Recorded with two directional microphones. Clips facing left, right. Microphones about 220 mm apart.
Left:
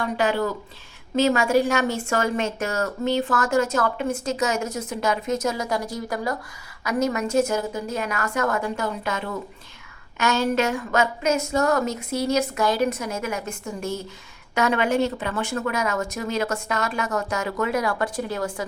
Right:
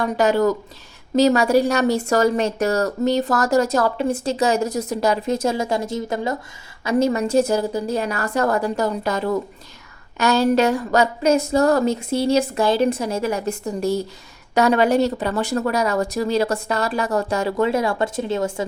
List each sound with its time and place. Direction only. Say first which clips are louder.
0.0 s speech: right 6 dB; 40° right (ahead or behind); by 18.6 s 25° right (ahead or behind)